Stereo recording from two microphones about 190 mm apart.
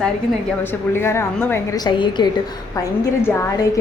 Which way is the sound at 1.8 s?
25° left (ahead or behind).